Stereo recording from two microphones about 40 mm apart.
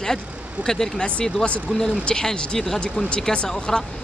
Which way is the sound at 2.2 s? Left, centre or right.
Centre.